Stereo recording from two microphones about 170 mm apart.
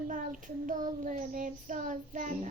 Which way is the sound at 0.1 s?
50° right (ahead or behind).